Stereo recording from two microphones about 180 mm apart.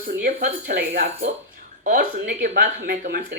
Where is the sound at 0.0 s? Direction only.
55° right (ahead or behind).